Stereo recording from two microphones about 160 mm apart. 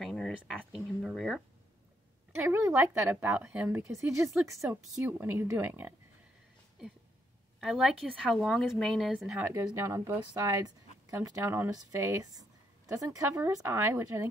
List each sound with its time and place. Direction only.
0.0 s a sound: centre (ahead or behind)
2.3 s a woman's voice: 15° right (ahead or behind)
7.6 s speech: centre (ahead or behind)
9.5 s speech: 20° right (ahead or behind)